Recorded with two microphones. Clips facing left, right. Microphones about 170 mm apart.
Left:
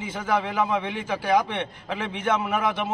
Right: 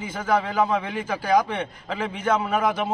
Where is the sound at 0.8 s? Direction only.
5° right (ahead or behind).